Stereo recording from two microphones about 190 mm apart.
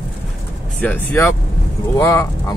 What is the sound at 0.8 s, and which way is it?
Speech, 10° left (ahead or behind).